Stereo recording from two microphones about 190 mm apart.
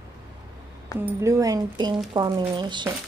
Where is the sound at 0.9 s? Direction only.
15° right (ahead or behind).